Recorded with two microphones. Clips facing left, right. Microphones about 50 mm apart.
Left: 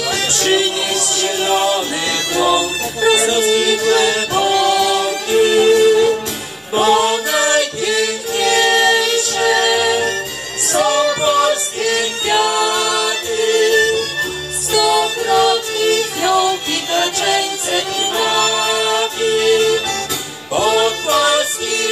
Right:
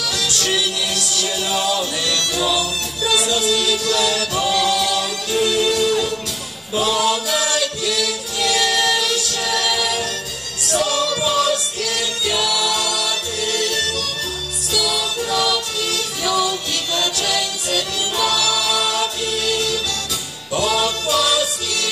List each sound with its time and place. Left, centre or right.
0.1 s music: left